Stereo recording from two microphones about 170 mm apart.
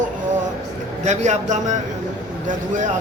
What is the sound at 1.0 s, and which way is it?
Speech, 45° right (ahead or behind).